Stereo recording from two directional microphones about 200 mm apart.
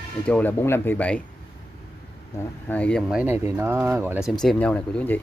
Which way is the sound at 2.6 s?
5° left (ahead or behind).